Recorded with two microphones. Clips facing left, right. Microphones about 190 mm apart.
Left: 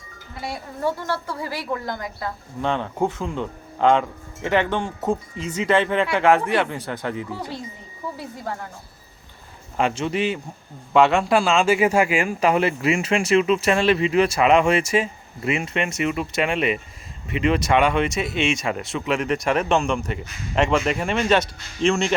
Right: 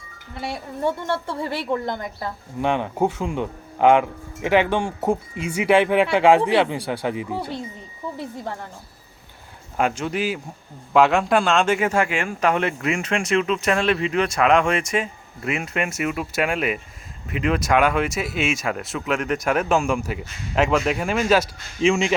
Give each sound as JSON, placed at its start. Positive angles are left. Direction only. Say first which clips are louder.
{"t": 0.3, "sound": "a woman's voice", "louder": "right 2 dB", "side_deg": -25}
{"t": 2.6, "sound": "speech", "louder": "right 2 dB", "side_deg": -15}
{"t": 9.7, "sound": "speech", "louder": "left 1 dB", "side_deg": 0}